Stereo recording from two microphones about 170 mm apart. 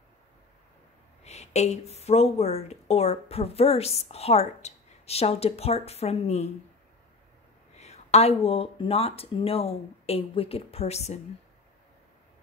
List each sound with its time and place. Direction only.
1.2 s a woman's voice: 40° left (ahead or behind)
7.7 s a woman's voice: 40° left (ahead or behind)